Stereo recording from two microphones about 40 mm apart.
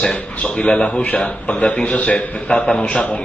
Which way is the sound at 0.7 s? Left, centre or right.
Left.